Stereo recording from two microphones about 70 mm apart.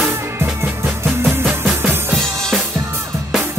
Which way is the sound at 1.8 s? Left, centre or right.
Right.